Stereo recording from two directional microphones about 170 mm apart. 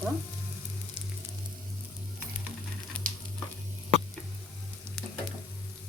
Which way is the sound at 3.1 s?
55° right (ahead or behind).